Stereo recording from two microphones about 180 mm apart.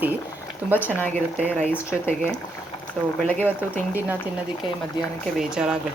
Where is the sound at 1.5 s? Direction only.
10° left (ahead or behind).